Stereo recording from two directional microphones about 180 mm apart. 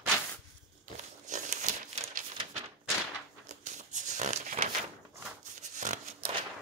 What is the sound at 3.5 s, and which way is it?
Crumpling, 40° right (ahead or behind).